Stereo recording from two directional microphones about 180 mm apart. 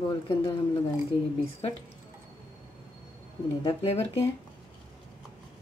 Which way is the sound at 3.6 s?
30° left (ahead or behind).